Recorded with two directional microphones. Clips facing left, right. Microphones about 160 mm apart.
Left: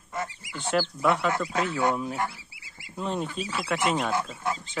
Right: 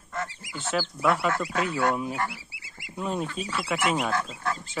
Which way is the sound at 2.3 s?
75° right (ahead or behind).